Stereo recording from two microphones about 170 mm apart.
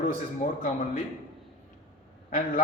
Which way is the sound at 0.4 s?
50° left (ahead or behind).